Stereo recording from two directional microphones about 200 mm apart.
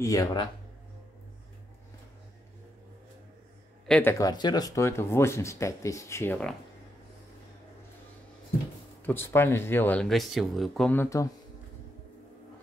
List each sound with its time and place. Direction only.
0.0 s speech: 15° left (ahead or behind)
3.8 s a man's voice: 5° left (ahead or behind)
4.1 s speech: 20° left (ahead or behind)
9.0 s speech: 10° left (ahead or behind)